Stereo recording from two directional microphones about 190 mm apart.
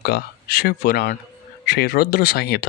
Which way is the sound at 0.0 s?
55° left (ahead or behind).